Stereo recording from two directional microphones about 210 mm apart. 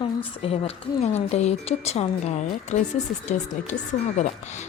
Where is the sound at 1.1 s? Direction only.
30° left (ahead or behind).